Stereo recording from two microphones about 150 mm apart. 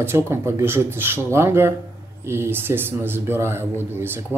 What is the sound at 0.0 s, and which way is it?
Speech, 15° right (ahead or behind).